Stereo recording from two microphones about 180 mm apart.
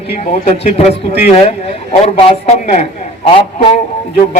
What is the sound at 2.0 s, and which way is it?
A man's voice, 35° left (ahead or behind).